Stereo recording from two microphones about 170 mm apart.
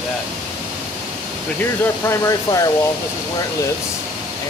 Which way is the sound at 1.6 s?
15° left (ahead or behind).